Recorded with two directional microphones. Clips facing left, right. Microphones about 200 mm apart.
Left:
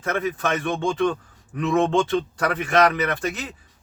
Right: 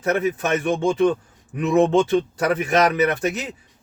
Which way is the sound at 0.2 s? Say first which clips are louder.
Right 3 dB; 10° right (ahead or behind).